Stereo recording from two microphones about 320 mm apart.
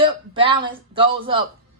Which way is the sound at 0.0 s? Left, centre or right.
Centre.